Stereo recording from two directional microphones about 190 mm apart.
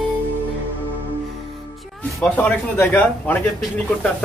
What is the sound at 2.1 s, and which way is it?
Speech, 10° left (ahead or behind).